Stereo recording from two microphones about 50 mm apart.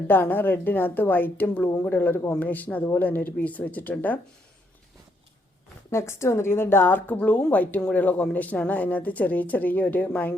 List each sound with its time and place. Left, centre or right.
0.1 s speech: left
5.9 s a woman's voice: left
7.2 s speech: left